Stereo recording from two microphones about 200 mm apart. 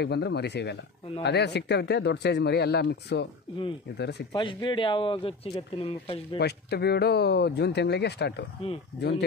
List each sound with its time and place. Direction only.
0.0 s speech: 55° left (ahead or behind)
4.3 s speech: 25° left (ahead or behind)
6.3 s speech: 55° left (ahead or behind)